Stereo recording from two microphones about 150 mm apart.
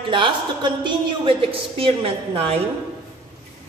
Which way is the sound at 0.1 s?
30° right (ahead or behind).